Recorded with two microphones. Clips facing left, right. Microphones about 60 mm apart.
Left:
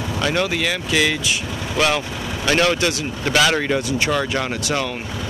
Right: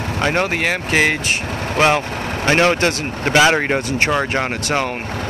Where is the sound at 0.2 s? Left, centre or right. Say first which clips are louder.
Right 3 dB; right.